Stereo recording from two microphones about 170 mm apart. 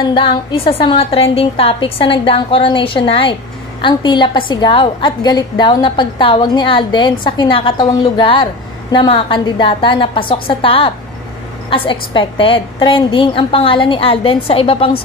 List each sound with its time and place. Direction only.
0.0 s a woman's voice: 30° left (ahead or behind)